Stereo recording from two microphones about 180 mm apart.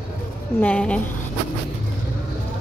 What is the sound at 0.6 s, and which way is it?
Speech, 5° left (ahead or behind).